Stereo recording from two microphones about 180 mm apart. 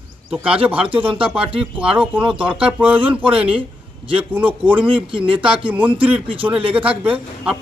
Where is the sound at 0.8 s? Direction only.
30° right (ahead or behind).